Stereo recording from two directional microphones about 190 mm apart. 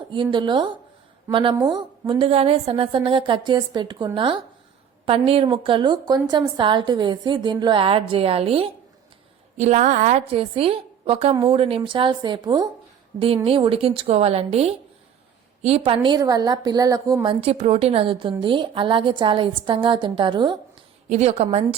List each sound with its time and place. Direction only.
0.1 s a woman's voice: 25° right (ahead or behind)
17.4 s a woman's voice: 30° right (ahead or behind)
21.1 s a woman's voice: 35° right (ahead or behind)